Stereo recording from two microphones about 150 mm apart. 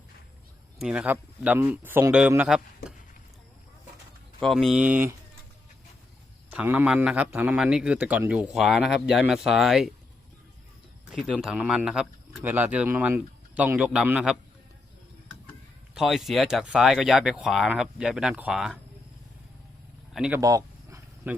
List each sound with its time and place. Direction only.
0.8 s a man's voice: 5° right (ahead or behind)
4.4 s speech: centre (ahead or behind)
6.5 s a man's voice: 10° right (ahead or behind)
11.1 s a man's voice: 5° right (ahead or behind)
16.0 s speech: centre (ahead or behind)
20.1 s a man's voice: 5° right (ahead or behind)
20.4 s a sound: 25° right (ahead or behind)
21.2 s a man's voice: 15° right (ahead or behind)